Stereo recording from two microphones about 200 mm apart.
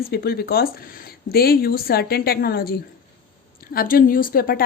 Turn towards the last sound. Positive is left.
turn(degrees=45)  # may be behind; listen again after turning